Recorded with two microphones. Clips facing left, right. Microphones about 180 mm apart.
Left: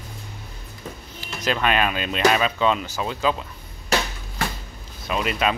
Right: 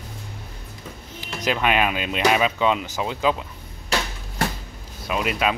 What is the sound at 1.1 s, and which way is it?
Speech, 15° right (ahead or behind).